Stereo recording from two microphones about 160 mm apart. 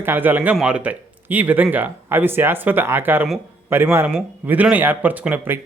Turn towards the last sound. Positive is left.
turn(degrees=-10)  # may be behind; listen again after turning